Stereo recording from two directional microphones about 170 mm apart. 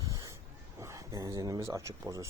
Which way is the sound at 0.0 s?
20° right (ahead or behind).